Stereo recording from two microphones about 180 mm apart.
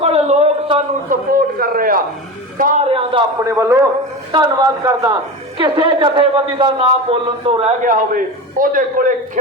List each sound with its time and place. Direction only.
0.0 s a sound: 35° right (ahead or behind)
1.3 s a man's voice: 55° right (ahead or behind)
2.8 s a man's voice: 30° right (ahead or behind)
3.5 s a man's voice: 15° right (ahead or behind); by 7.7 s 30° right (ahead or behind)
7.9 s a man's voice: 50° right (ahead or behind)